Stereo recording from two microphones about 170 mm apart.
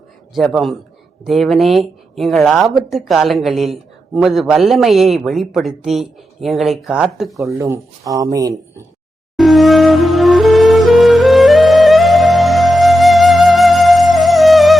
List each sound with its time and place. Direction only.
0.3 s a man's voice: centre (ahead or behind)
7.4 s speech: 15° right (ahead or behind)
9.4 s music: centre (ahead or behind)